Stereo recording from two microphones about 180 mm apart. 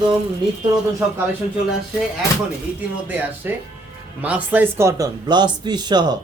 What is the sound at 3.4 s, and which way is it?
Speech, 10° right (ahead or behind).